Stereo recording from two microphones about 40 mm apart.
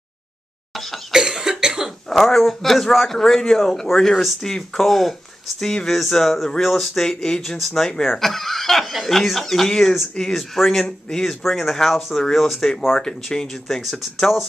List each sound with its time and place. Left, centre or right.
0.7 s cough: centre
1.1 s cough: centre
2.1 s a man's voice: centre
5.9 s speech: centre
7.0 s a man's voice: centre
7.4 s speech: centre
7.8 s a man's voice: centre
10.5 s a man's voice: centre
13.8 s speech: centre